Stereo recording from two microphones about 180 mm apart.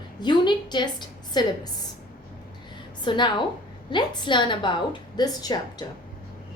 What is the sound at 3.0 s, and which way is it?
A woman's voice, 25° left (ahead or behind).